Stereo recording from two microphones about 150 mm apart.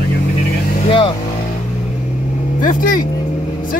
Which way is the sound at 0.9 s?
35° left (ahead or behind).